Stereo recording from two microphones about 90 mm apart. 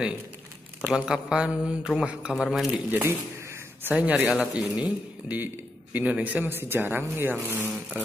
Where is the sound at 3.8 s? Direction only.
15° right (ahead or behind).